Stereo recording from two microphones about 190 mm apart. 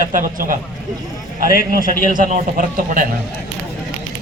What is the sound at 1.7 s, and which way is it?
A man's voice, 45° right (ahead or behind).